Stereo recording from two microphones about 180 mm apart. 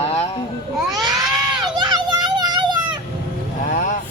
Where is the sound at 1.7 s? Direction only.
25° right (ahead or behind).